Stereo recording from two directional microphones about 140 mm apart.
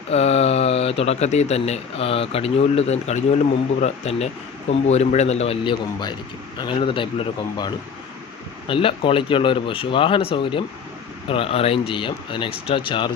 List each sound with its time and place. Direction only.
0.1 s speech: 50° left (ahead or behind)
6.6 s speech: 35° left (ahead or behind)